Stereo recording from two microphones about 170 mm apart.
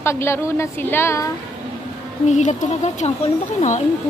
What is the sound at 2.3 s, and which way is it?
Speech, 45° left (ahead or behind).